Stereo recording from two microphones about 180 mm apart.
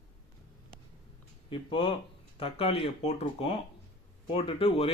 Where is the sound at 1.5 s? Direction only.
30° left (ahead or behind).